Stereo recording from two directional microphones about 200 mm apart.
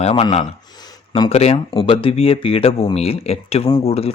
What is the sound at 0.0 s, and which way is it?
Speech, 30° left (ahead or behind).